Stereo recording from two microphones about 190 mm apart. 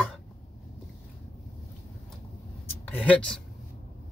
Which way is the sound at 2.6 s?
10° left (ahead or behind).